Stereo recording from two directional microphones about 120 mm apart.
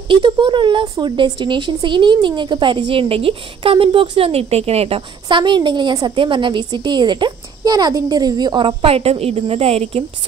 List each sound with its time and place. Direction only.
0.1 s a woman's voice: 45° right (ahead or behind); by 10.0 s 60° right (ahead or behind)